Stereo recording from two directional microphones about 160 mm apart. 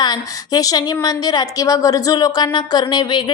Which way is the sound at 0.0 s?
25° left (ahead or behind).